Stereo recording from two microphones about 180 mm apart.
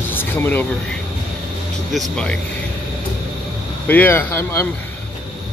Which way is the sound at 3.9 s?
10° left (ahead or behind).